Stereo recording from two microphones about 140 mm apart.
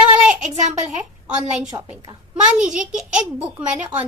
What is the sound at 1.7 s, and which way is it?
Speech, 30° right (ahead or behind).